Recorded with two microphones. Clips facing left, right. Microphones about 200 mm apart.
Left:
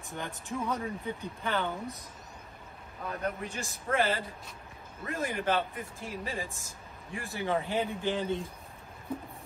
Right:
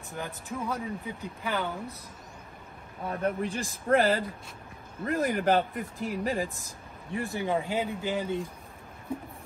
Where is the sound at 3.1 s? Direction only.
30° right (ahead or behind).